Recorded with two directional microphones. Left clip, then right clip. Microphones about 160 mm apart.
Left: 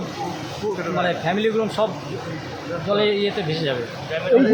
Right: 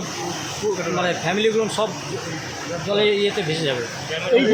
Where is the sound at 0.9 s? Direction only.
Centre (ahead or behind).